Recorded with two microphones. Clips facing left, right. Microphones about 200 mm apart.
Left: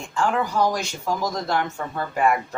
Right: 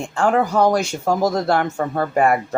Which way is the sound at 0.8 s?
45° right (ahead or behind).